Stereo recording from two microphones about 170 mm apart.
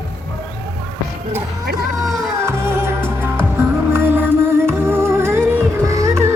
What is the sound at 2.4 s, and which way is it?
Music, 15° right (ahead or behind).